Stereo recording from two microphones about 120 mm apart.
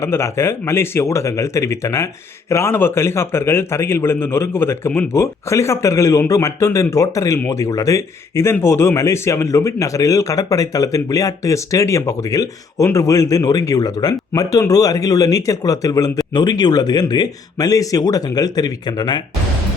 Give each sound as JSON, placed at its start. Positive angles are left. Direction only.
{"t": 0.0, "sound": "a man's voice", "side_deg": 25}